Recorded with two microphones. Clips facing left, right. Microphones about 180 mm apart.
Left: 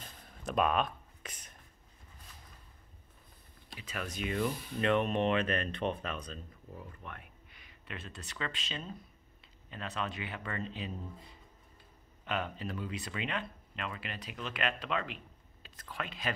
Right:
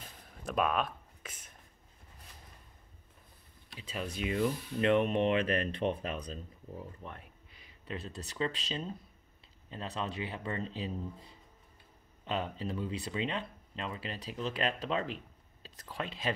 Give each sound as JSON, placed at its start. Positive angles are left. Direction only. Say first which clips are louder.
{"t": 0.0, "sound": "a sound", "louder": "left 1 dB", "side_deg": -5}
{"t": 3.8, "sound": "speech", "louder": "right 2 dB", "side_deg": -30}
{"t": 12.3, "sound": "speech", "louder": "right 1 dB", "side_deg": -30}